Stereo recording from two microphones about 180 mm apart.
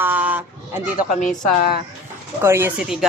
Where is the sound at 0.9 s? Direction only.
50° left (ahead or behind).